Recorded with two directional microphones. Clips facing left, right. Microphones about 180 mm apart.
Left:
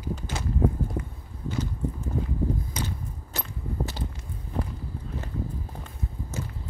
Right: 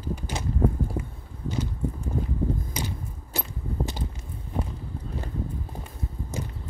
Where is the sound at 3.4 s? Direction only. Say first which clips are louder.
Right 1 dB; 15° right (ahead or behind).